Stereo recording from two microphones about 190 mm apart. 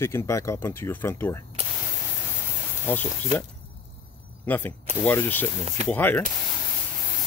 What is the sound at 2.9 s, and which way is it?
Speech, 10° left (ahead or behind).